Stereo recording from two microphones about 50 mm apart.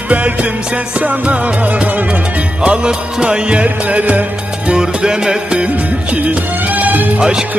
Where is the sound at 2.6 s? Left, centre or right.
Centre.